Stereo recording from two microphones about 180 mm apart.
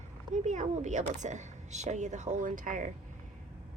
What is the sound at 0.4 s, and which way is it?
Speech, 40° right (ahead or behind).